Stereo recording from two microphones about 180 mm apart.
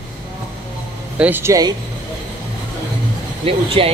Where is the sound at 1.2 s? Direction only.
10° right (ahead or behind).